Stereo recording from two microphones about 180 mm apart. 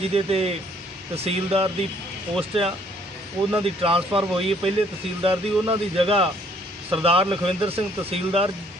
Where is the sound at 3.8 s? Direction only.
30° right (ahead or behind).